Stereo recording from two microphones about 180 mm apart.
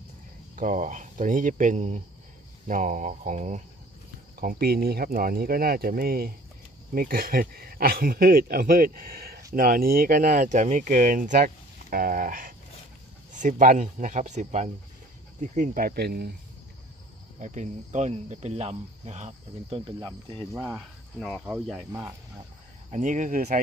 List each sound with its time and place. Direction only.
0.6 s speech: 45° right (ahead or behind)
4.4 s speech: 55° right (ahead or behind)
17.4 s cricket: 40° right (ahead or behind)
20.0 s speech: 25° right (ahead or behind)
20.5 s speech: 5° right (ahead or behind)
22.8 s speech: 45° right (ahead or behind)